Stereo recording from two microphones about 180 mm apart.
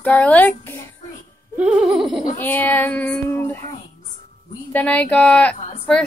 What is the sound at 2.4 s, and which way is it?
Child singing, 10° left (ahead or behind).